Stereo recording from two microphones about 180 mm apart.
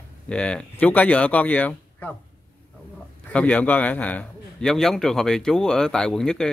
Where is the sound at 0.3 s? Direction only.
5° left (ahead or behind).